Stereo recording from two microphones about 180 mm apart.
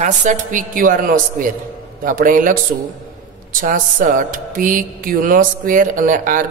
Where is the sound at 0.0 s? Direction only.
45° right (ahead or behind).